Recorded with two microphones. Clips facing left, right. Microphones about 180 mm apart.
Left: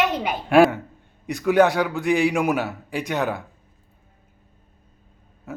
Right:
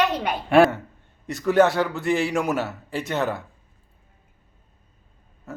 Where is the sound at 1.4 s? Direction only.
15° left (ahead or behind).